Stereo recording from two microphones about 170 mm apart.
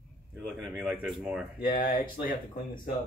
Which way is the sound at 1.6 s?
55° left (ahead or behind).